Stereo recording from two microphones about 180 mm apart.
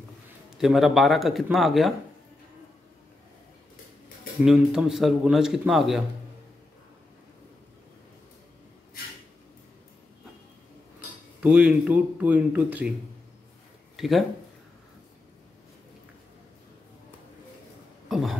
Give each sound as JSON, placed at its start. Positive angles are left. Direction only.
{"t": 0.6, "sound": "speech", "side_deg": 0}
{"t": 4.5, "sound": "speech", "side_deg": 0}
{"t": 11.4, "sound": "speech", "side_deg": -5}
{"t": 13.9, "sound": "speech", "side_deg": 0}
{"t": 18.0, "sound": "a sound", "side_deg": 0}